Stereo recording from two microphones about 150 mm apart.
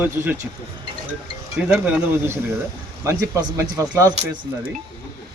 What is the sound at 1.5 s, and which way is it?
Speech, 10° right (ahead or behind).